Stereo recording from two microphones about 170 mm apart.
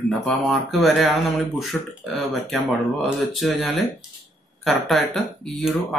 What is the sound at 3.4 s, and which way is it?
Speech, centre (ahead or behind).